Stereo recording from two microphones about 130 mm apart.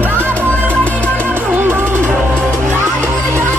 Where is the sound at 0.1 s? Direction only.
15° right (ahead or behind).